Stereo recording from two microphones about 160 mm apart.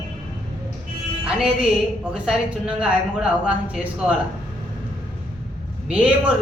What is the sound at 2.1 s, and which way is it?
Speech, 5° right (ahead or behind).